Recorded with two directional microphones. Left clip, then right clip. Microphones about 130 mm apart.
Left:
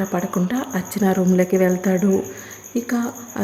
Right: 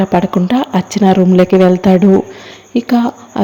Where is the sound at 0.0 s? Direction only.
35° right (ahead or behind).